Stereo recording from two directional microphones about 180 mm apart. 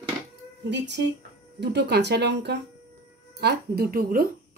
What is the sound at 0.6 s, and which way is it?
Speech, 75° right (ahead or behind).